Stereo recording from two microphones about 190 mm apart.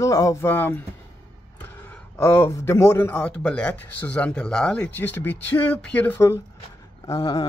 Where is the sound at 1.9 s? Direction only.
10° left (ahead or behind).